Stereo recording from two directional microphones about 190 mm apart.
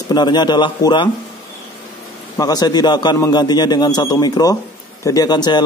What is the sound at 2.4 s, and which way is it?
A man's voice, 20° left (ahead or behind).